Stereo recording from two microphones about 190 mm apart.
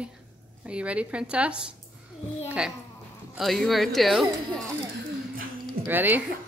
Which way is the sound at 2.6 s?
5° right (ahead or behind).